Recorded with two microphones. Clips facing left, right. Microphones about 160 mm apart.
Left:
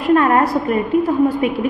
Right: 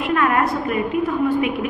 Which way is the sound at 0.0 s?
35° left (ahead or behind).